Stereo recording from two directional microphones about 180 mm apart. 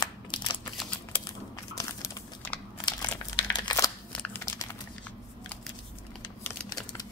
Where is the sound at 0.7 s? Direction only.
5° left (ahead or behind).